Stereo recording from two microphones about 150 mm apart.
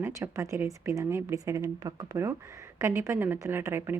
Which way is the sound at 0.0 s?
20° right (ahead or behind).